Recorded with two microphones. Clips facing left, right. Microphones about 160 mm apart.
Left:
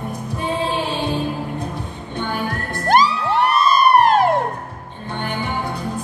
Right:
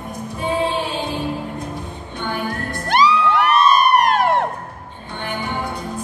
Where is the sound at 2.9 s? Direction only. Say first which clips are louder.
Even; 40° left (ahead or behind).